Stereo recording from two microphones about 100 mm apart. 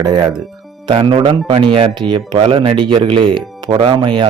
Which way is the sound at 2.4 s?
70° right (ahead or behind).